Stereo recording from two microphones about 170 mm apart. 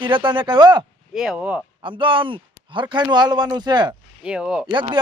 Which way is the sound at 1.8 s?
30° right (ahead or behind).